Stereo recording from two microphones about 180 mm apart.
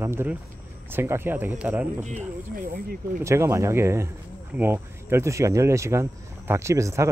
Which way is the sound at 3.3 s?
15° right (ahead or behind).